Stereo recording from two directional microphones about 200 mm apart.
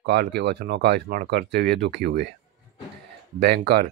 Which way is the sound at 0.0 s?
55° right (ahead or behind).